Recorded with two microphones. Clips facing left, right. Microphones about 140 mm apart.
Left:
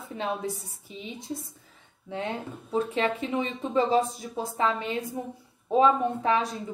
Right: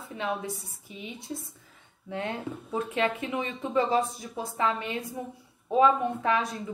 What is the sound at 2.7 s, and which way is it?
A woman's voice, 25° left (ahead or behind).